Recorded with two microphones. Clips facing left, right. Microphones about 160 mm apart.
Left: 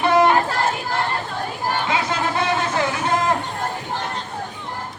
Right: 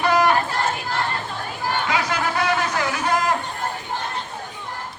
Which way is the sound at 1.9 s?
25° left (ahead or behind).